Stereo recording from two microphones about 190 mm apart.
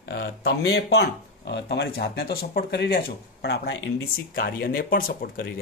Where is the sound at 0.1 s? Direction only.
60° left (ahead or behind).